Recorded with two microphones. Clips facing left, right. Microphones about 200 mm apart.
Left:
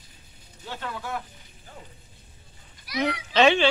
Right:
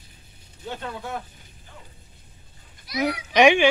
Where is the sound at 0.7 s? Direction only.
20° right (ahead or behind).